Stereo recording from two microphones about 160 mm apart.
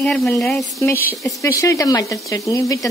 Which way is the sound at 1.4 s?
20° left (ahead or behind).